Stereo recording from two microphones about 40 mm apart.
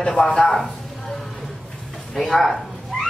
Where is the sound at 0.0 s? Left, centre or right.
Centre.